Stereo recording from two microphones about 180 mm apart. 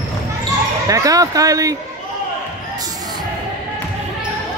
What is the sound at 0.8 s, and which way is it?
Speech, 20° right (ahead or behind).